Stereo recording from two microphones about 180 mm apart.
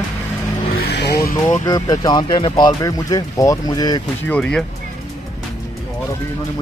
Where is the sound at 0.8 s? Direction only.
65° left (ahead or behind).